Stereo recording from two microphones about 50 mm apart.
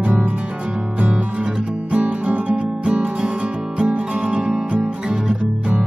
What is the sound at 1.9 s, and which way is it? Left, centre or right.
Music, right.